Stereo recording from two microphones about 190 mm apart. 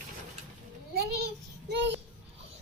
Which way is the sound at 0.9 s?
55° right (ahead or behind).